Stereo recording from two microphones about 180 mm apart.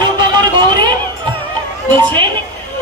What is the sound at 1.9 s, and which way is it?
Speech, 25° right (ahead or behind).